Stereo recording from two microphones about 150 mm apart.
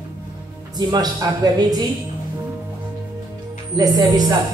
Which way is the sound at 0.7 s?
25° right (ahead or behind).